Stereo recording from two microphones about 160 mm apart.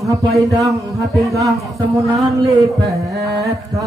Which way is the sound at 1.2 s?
20° right (ahead or behind).